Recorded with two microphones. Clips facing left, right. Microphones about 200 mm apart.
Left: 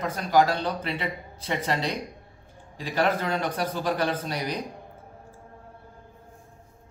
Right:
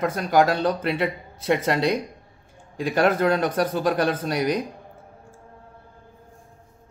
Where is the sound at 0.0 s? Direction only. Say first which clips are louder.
Right 3 dB; 50° right (ahead or behind).